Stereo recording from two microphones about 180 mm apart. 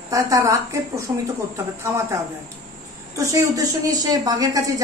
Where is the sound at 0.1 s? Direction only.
15° right (ahead or behind).